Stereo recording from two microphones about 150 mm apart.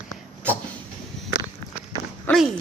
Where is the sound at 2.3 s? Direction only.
10° left (ahead or behind).